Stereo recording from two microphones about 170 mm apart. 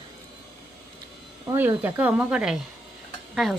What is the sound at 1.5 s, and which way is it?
Speech, 15° right (ahead or behind).